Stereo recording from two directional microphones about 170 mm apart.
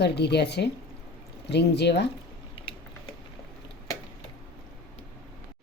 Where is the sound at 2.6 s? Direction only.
30° left (ahead or behind).